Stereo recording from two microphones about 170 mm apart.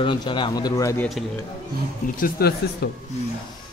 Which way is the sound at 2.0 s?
60° left (ahead or behind).